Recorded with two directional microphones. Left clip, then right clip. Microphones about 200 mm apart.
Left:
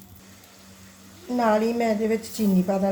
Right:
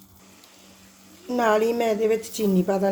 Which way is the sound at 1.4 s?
40° right (ahead or behind).